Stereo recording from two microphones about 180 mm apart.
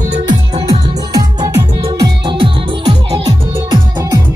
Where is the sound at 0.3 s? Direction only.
30° right (ahead or behind).